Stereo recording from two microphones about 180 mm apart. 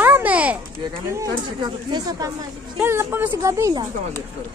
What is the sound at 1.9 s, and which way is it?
A woman's voice, 20° right (ahead or behind).